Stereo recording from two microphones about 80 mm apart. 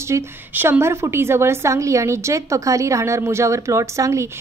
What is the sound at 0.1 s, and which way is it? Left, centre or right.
A woman's voice, right.